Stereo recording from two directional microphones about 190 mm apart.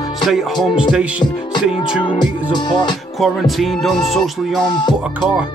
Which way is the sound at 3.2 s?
Centre (ahead or behind).